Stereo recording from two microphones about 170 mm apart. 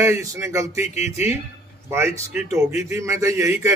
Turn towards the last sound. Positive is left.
turn(degrees=-15)  # may be behind; listen again after turning